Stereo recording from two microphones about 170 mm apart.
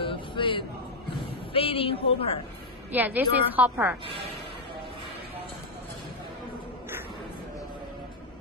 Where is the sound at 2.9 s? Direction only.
10° right (ahead or behind).